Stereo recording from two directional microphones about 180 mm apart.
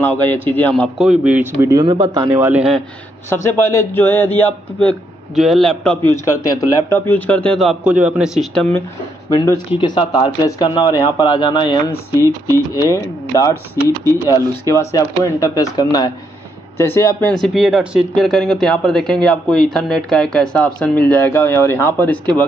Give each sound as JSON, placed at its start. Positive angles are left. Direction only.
{"t": 0.0, "sound": "speech", "side_deg": 10}
{"t": 0.9, "sound": "speech", "side_deg": -5}
{"t": 3.3, "sound": "speech", "side_deg": 15}
{"t": 6.4, "sound": "speech", "side_deg": 20}
{"t": 7.1, "sound": "speech", "side_deg": 10}
{"t": 9.3, "sound": "speech", "side_deg": 20}